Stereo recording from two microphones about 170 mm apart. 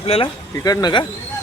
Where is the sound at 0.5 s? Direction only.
20° left (ahead or behind).